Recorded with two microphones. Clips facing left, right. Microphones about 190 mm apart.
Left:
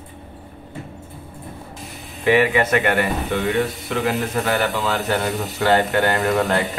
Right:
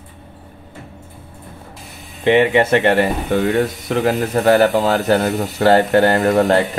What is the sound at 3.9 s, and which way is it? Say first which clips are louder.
Speech: right 5 dB; 40° right (ahead or behind).